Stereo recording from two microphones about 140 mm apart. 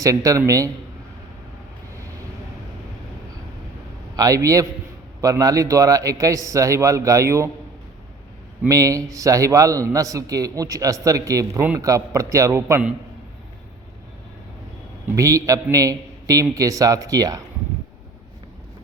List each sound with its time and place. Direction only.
0.0 s a man's voice: 25° right (ahead or behind)
4.1 s a man's voice: 25° right (ahead or behind)
8.6 s a man's voice: 25° right (ahead or behind)
15.1 s a man's voice: 25° right (ahead or behind)